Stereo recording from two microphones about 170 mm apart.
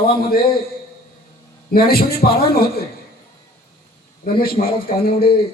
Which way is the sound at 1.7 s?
60° left (ahead or behind).